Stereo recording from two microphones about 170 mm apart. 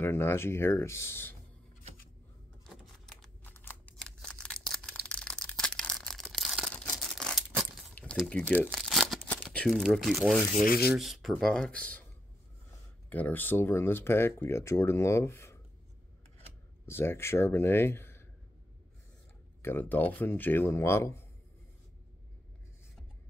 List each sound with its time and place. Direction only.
0.0 s speech: 15° left (ahead or behind)
2.6 s a sound: centre (ahead or behind)
3.9 s scissors: 5° left (ahead or behind)
4.8 s a sound: 5° left (ahead or behind)
6.4 s tearing: centre (ahead or behind)
8.6 s crumpling: centre (ahead or behind)
10.6 s rub: 60° left (ahead or behind)
10.9 s speech: centre (ahead or behind)
13.1 s speech: 10° left (ahead or behind)
16.8 s speech: 15° left (ahead or behind)
19.6 s speech: 10° left (ahead or behind)